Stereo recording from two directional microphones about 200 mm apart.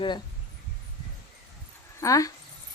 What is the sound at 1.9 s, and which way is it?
Speech, 15° left (ahead or behind).